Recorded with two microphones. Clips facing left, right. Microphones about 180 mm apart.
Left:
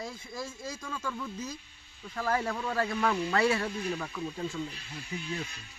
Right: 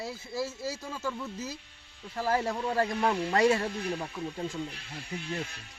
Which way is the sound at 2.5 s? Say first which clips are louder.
Right 2 dB; 20° right (ahead or behind).